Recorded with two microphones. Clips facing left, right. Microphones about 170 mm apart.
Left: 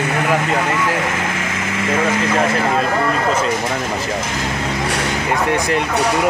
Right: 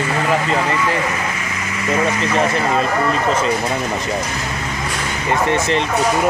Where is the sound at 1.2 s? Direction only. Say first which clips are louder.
Left 2 dB; 75° left (ahead or behind).